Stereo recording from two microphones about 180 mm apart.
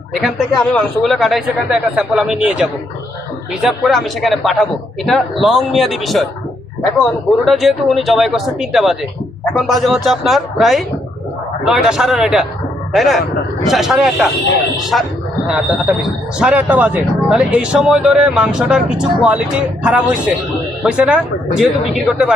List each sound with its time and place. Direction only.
0.1 s speech: centre (ahead or behind)